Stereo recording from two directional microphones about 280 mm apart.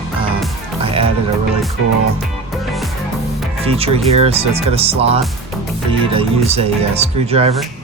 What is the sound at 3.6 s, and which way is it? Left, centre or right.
Speech, right.